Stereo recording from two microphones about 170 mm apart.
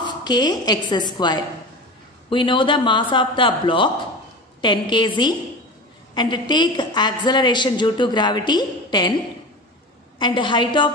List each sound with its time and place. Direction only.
0.0 s a woman's voice: 25° left (ahead or behind)
10.1 s a woman's voice: 30° left (ahead or behind)